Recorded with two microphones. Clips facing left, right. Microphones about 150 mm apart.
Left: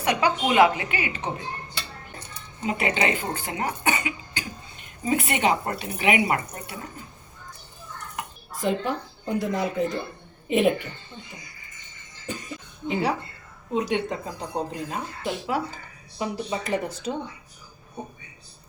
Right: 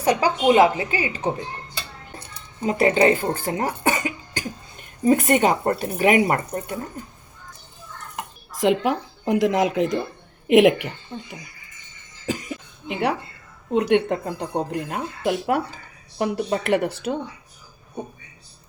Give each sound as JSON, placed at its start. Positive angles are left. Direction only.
{"t": 0.0, "sound": "a woman's voice", "side_deg": -35}
{"t": 2.6, "sound": "speech", "side_deg": -40}
{"t": 8.5, "sound": "a woman's voice", "side_deg": -90}
{"t": 12.3, "sound": "a woman's voice", "side_deg": -90}
{"t": 13.7, "sound": "speech", "side_deg": -60}